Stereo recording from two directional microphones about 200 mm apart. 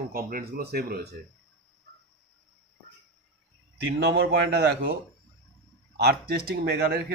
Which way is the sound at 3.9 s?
60° right (ahead or behind).